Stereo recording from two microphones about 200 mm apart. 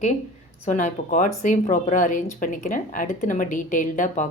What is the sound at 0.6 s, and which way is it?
A woman's voice, 35° left (ahead or behind).